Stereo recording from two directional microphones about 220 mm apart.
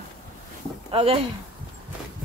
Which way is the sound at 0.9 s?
25° right (ahead or behind).